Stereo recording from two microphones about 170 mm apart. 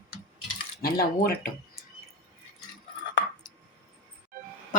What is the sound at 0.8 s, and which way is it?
Speech, 65° left (ahead or behind).